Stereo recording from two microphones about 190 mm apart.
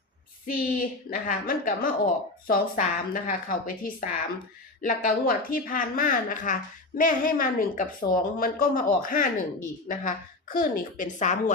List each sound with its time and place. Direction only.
0.4 s speech: 45° left (ahead or behind)